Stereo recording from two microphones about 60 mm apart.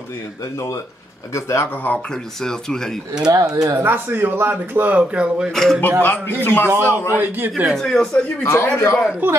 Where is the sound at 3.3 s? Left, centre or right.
Right.